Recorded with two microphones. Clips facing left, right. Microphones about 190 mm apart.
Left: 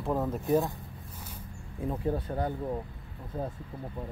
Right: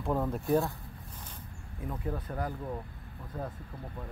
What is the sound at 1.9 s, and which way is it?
Speech, 30° left (ahead or behind).